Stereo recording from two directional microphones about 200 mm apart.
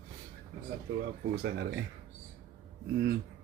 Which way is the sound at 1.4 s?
60° right (ahead or behind).